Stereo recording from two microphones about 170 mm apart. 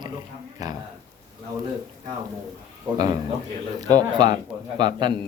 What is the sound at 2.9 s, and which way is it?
Speech, 15° right (ahead or behind).